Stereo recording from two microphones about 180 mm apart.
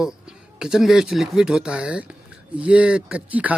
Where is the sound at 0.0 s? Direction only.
5° right (ahead or behind).